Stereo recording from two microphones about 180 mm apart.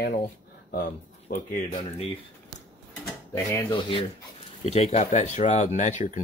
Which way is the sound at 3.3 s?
10° left (ahead or behind).